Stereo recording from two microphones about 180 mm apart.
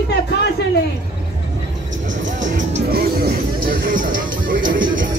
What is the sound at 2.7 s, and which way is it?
Music, 60° right (ahead or behind).